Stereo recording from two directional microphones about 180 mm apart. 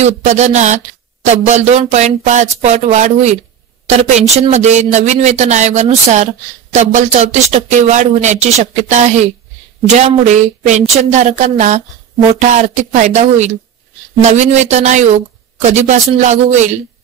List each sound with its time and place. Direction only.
0.0 s speech: 40° right (ahead or behind)